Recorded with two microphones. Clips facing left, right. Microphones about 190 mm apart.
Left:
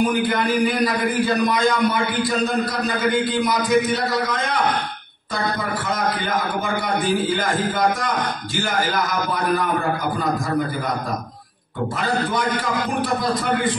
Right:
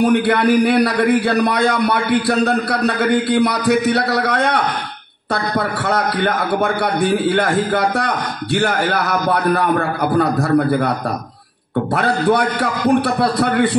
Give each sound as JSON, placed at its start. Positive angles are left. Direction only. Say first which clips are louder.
{"t": 0.0, "sound": "a man's voice", "louder": "right 6 dB", "side_deg": -65}
{"t": 11.9, "sound": "a man's voice", "louder": "right 7 dB", "side_deg": -65}